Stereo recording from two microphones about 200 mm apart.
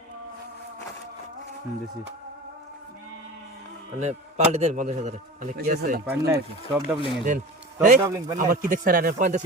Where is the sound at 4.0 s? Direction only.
35° right (ahead or behind).